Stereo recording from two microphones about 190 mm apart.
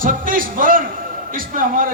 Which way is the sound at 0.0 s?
45° right (ahead or behind).